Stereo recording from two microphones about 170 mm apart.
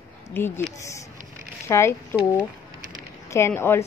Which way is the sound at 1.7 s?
15° left (ahead or behind).